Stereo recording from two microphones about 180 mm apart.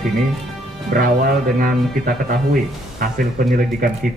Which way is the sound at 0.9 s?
55° right (ahead or behind).